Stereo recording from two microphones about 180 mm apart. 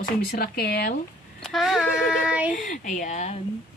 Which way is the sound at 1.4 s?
Centre (ahead or behind).